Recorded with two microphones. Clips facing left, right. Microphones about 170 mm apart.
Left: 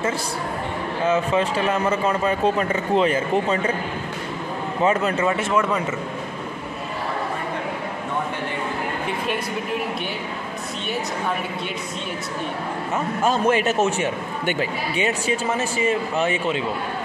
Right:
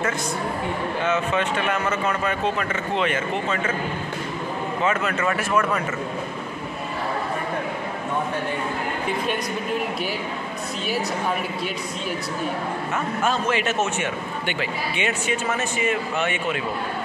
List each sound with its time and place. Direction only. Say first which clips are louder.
1.0 s a man's voice: left 4 dB; 35° left (ahead or behind)
4.8 s a man's voice: left 4 dB; 30° left (ahead or behind)
5.2 s speech: left 2 dB; 20° left (ahead or behind)
13.2 s a man's voice: left 5 dB; 45° left (ahead or behind)